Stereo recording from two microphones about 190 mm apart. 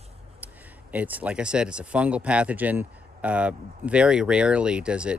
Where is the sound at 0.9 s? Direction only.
10° right (ahead or behind).